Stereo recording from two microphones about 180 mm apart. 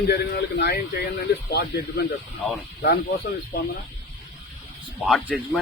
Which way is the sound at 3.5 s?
60° left (ahead or behind).